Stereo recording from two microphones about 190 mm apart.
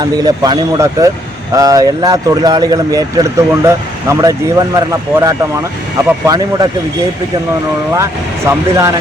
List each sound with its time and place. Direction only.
0.0 s speech: 20° right (ahead or behind)
8.4 s speech: 15° right (ahead or behind)